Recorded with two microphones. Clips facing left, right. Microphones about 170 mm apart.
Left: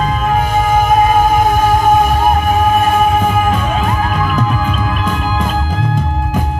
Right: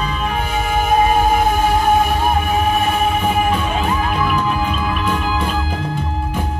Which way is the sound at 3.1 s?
45° left (ahead or behind).